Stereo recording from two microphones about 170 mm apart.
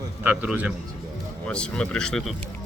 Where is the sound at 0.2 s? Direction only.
10° right (ahead or behind).